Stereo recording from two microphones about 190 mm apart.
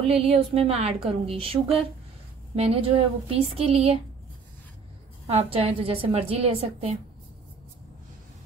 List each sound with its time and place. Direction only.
0.0 s a woman's voice: 30° right (ahead or behind)
5.2 s a woman's voice: 30° right (ahead or behind)